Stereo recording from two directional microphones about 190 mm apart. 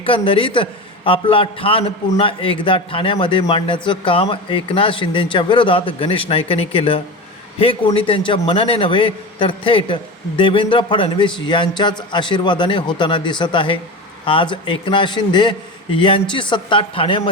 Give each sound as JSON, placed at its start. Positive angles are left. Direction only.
{"t": 0.0, "sound": "a man's voice", "side_deg": 30}